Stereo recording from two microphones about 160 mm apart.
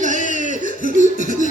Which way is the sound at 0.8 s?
50° left (ahead or behind).